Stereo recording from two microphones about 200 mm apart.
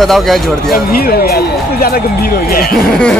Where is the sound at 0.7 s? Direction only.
50° left (ahead or behind).